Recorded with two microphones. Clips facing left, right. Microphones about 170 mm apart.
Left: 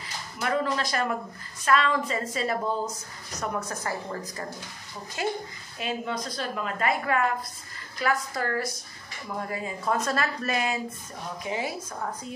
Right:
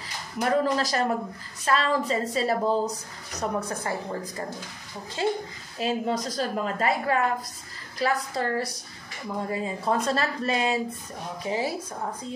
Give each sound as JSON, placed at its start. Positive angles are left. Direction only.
{"t": 0.4, "sound": "a woman's voice", "side_deg": -35}
{"t": 5.2, "sound": "a child's voice", "side_deg": -30}